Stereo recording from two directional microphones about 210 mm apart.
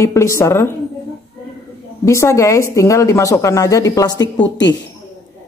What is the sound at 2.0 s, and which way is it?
A woman's voice, 15° left (ahead or behind).